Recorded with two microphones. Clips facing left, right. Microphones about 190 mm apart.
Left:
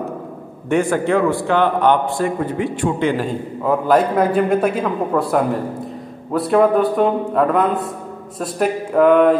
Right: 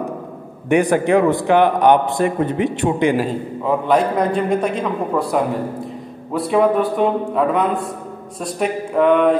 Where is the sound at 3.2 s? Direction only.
Centre (ahead or behind).